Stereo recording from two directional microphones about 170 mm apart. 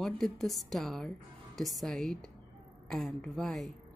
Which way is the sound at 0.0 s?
Centre (ahead or behind).